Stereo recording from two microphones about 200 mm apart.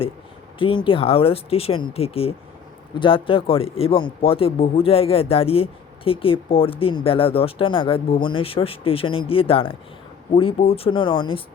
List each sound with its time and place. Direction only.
0.6 s speech: 25° left (ahead or behind)